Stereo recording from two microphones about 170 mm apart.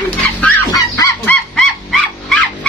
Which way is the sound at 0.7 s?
20° left (ahead or behind).